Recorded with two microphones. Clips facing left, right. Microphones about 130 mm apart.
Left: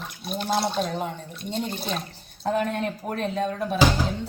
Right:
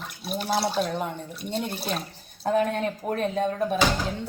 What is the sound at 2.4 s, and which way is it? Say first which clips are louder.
A woman's voice: right 1 dB; 45° right (ahead or behind).